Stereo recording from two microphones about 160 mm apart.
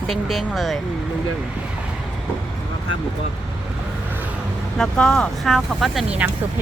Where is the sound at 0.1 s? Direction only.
Centre (ahead or behind).